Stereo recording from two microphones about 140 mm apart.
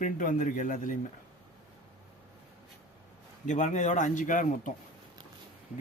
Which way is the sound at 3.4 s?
60° left (ahead or behind).